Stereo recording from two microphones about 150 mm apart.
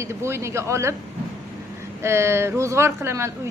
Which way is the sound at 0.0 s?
15° right (ahead or behind).